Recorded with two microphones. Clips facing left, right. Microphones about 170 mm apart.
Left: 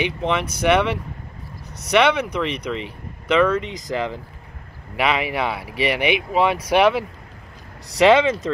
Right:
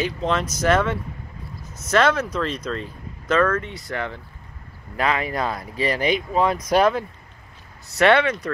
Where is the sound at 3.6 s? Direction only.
90° left.